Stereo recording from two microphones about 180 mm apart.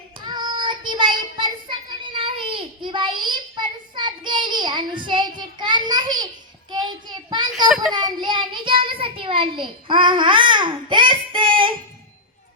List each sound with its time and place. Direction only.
0.2 s child singing: 25° right (ahead or behind)